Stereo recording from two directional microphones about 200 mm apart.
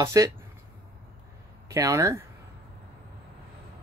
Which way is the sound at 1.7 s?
15° right (ahead or behind).